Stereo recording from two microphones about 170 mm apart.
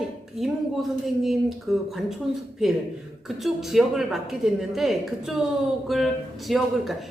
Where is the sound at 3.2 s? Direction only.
Centre (ahead or behind).